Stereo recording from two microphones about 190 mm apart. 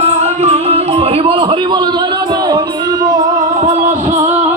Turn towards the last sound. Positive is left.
turn(degrees=-20)  # may be behind; listen again after turning